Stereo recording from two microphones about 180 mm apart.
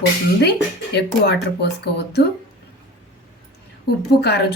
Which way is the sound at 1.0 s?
70° left (ahead or behind).